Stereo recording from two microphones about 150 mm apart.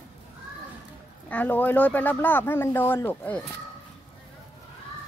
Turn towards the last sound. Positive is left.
turn(degrees=15)  # may be behind; listen again after turning